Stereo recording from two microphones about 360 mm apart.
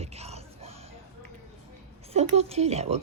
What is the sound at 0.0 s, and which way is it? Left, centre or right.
Music, centre.